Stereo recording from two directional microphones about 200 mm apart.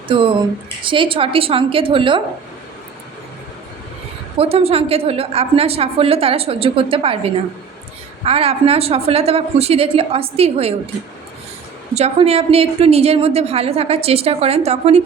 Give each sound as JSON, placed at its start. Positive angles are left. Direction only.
{"t": 0.1, "sound": "a woman's voice", "side_deg": -25}
{"t": 4.4, "sound": "a woman's voice", "side_deg": -30}
{"t": 8.2, "sound": "a woman's voice", "side_deg": -30}
{"t": 11.9, "sound": "a woman's voice", "side_deg": -30}